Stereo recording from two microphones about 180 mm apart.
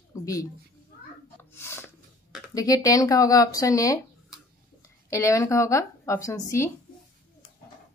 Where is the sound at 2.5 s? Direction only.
20° left (ahead or behind).